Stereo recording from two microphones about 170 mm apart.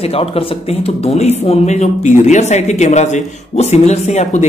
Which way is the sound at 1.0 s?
40° left (ahead or behind).